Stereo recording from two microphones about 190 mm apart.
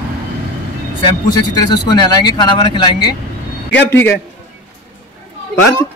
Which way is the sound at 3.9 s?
10° left (ahead or behind).